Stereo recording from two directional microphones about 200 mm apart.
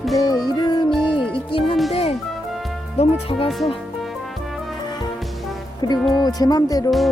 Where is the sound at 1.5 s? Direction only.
25° left (ahead or behind).